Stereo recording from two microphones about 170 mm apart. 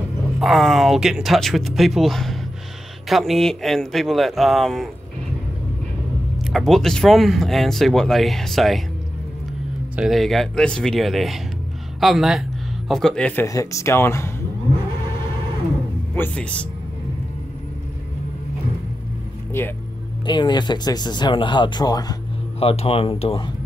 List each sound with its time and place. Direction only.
0.4 s speech: centre (ahead or behind)
6.4 s speech: centre (ahead or behind)
9.9 s speech: centre (ahead or behind)
13.5 s speech: 20° left (ahead or behind)
16.2 s speech: 5° left (ahead or behind)
19.6 s speech: 15° left (ahead or behind)
20.2 s speech: 25° left (ahead or behind)
22.6 s speech: 35° left (ahead or behind)